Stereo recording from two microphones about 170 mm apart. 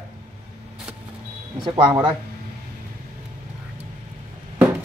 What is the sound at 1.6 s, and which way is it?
Speech, 30° right (ahead or behind).